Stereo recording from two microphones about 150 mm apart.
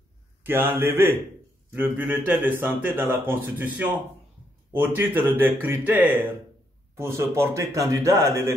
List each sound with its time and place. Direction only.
0.4 s speech: 15° right (ahead or behind)